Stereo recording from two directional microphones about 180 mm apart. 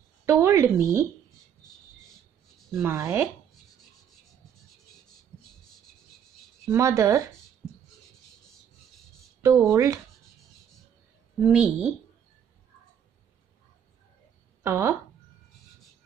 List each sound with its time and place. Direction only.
0.2 s speech: 15° right (ahead or behind)
2.7 s speech: 10° right (ahead or behind)
6.7 s speech: 15° right (ahead or behind)
9.6 s speech: 15° right (ahead or behind)
11.3 s speech: 5° right (ahead or behind)
14.6 s speech: 15° right (ahead or behind)